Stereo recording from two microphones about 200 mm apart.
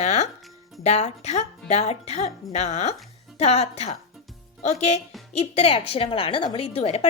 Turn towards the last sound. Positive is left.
turn(degrees=30)  # may be behind; listen again after turning